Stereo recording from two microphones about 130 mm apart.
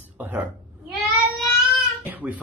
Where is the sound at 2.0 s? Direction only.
10° right (ahead or behind).